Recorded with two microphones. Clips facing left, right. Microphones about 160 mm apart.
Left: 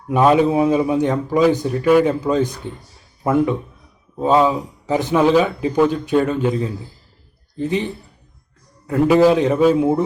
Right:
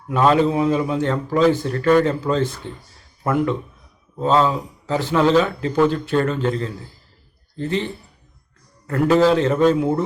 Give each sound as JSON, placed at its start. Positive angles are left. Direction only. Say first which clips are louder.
{"t": 0.1, "sound": "speech", "louder": "left 2 dB", "side_deg": 15}
{"t": 8.9, "sound": "speech", "louder": "left 2 dB", "side_deg": 10}